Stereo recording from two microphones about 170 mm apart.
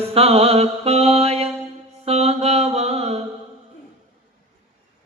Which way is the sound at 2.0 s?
35° right (ahead or behind).